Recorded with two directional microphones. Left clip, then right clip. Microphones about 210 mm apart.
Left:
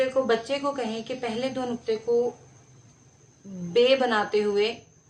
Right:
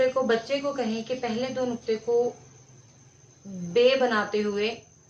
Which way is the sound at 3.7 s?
45° left (ahead or behind).